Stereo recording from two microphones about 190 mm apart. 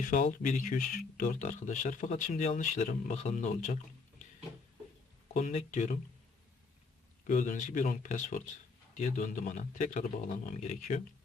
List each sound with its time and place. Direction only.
0.0 s speech: 40° left (ahead or behind)
5.3 s a man's voice: 35° left (ahead or behind)
7.3 s a man's voice: 40° left (ahead or behind)